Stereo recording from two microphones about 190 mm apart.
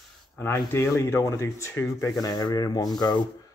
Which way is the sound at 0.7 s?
10° left (ahead or behind).